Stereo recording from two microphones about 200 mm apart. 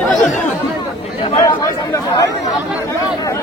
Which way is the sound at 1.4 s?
15° left (ahead or behind).